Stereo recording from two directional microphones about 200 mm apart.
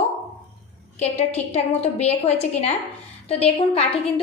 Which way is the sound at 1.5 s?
30° left (ahead or behind).